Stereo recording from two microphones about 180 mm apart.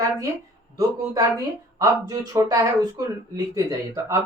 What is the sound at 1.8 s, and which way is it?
Speech, 15° right (ahead or behind).